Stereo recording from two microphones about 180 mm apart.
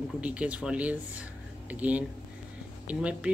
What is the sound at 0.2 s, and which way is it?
Speech, 5° right (ahead or behind).